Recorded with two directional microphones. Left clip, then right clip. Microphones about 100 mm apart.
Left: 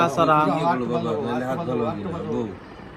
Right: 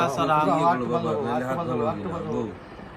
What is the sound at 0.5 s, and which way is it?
Speech, 60° right (ahead or behind).